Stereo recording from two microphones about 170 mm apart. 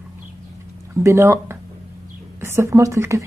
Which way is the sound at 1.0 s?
15° right (ahead or behind).